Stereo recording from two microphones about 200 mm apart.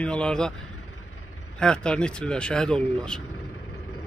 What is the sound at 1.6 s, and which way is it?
Speech, 5° left (ahead or behind).